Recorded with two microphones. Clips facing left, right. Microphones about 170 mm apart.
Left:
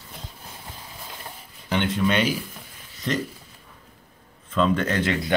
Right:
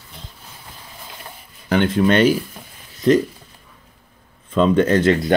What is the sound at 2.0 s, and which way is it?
Speech, 55° right (ahead or behind).